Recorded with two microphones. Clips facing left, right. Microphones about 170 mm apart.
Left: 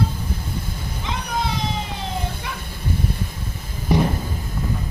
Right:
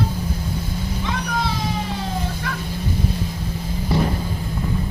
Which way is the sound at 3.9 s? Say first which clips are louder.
Left 2 dB; 20° left (ahead or behind).